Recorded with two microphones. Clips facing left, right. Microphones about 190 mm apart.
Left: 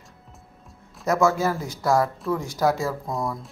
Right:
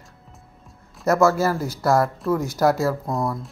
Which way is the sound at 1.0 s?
5° right (ahead or behind).